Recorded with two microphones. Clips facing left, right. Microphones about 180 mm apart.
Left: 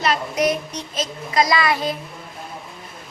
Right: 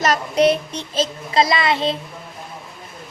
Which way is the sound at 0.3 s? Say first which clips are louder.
Right 5 dB; 30° right (ahead or behind).